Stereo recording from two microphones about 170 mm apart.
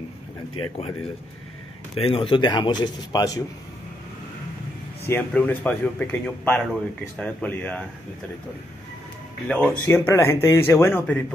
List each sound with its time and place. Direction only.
0.7 s speech: 35° left (ahead or behind)
5.0 s speech: 10° left (ahead or behind)
9.5 s speech: 10° left (ahead or behind)